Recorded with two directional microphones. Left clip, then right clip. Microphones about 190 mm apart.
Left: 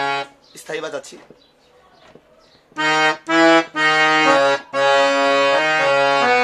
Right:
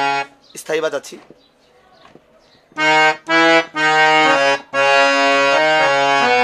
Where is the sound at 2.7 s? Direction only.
15° right (ahead or behind).